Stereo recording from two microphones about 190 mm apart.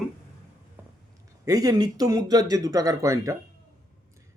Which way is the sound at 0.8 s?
10° right (ahead or behind).